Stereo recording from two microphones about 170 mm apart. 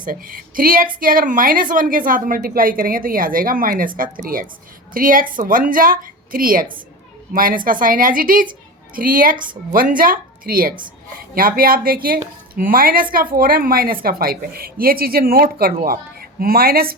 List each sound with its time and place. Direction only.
0.0 s a woman's voice: 55° right (ahead or behind)